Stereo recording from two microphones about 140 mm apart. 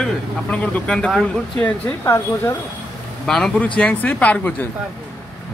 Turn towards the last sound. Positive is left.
turn(degrees=10)  # may be behind; listen again after turning